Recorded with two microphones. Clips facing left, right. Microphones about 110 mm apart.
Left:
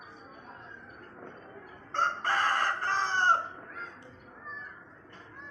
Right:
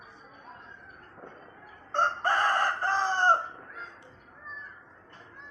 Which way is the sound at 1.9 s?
20° right (ahead or behind).